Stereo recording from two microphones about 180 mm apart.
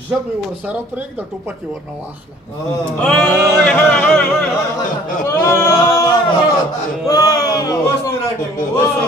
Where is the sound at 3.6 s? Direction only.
5° left (ahead or behind).